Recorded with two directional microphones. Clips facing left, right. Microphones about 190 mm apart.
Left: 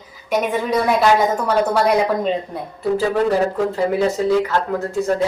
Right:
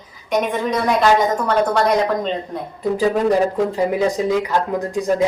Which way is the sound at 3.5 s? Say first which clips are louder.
Even; 15° right (ahead or behind).